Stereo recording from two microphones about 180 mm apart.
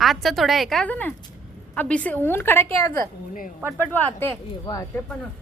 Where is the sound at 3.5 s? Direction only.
10° right (ahead or behind).